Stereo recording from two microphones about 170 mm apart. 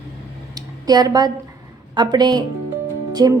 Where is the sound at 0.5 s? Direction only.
25° right (ahead or behind).